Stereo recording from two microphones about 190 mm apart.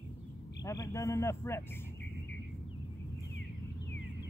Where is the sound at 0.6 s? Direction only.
15° left (ahead or behind).